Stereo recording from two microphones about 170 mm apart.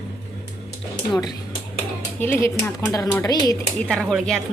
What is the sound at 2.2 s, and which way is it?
Speech, 15° left (ahead or behind).